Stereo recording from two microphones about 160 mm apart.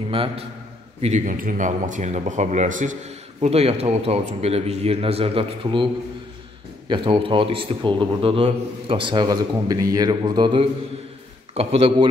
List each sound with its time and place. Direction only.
0.1 s a man's voice: 35° right (ahead or behind)
1.0 s speech: 50° right (ahead or behind)
3.3 s a man's voice: 40° right (ahead or behind)
6.9 s a man's voice: 30° right (ahead or behind)